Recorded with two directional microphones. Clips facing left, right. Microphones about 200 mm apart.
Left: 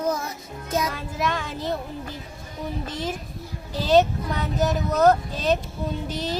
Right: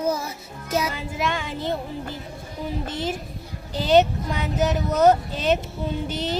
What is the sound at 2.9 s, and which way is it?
Speech, 30° right (ahead or behind).